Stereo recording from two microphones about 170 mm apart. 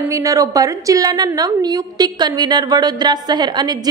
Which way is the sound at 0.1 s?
20° right (ahead or behind).